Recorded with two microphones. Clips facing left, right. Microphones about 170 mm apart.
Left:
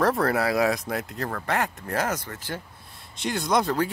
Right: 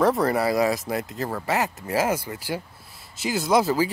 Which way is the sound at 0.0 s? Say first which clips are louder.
Right 2 dB; centre (ahead or behind).